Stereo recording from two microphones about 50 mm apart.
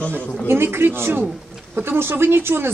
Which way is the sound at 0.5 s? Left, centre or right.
Right.